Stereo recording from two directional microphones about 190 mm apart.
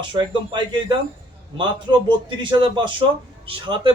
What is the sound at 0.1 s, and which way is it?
Speech, 25° right (ahead or behind).